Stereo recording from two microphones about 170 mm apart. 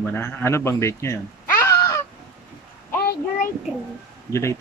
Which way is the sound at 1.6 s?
15° left (ahead or behind).